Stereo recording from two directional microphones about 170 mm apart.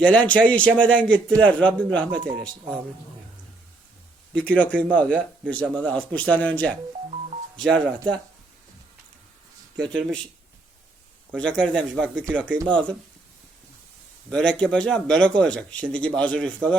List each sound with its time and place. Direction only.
0.0 s speech: 5° left (ahead or behind)
2.1 s speech: 30° right (ahead or behind)
4.4 s speech: 10° left (ahead or behind)
9.7 s speech: 5° left (ahead or behind)
11.3 s speech: 5° left (ahead or behind)
14.3 s speech: 5° left (ahead or behind)